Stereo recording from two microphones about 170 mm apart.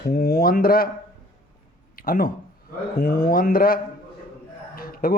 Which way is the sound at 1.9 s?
55° left (ahead or behind).